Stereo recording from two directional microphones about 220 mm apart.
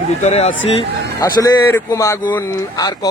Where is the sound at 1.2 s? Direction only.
15° left (ahead or behind).